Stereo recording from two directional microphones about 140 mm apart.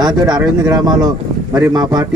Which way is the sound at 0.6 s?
25° right (ahead or behind).